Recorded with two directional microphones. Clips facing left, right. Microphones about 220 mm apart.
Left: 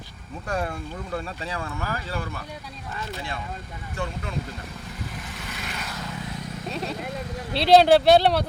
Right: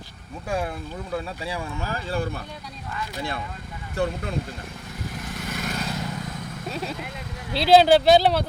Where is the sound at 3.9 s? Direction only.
40° right (ahead or behind).